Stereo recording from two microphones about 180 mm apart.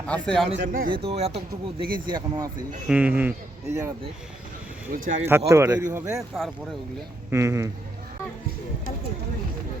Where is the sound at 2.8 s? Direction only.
5° right (ahead or behind).